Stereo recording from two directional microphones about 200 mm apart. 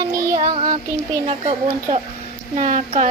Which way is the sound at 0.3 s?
35° right (ahead or behind).